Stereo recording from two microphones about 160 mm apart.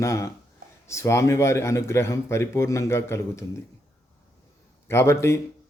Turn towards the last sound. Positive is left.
turn(degrees=15)  # may be behind; listen again after turning